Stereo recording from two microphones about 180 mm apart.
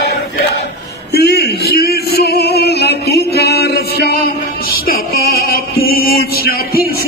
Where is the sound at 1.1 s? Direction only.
65° left (ahead or behind).